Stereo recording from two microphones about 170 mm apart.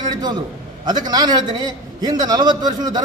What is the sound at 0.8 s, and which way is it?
A man's voice, 25° right (ahead or behind).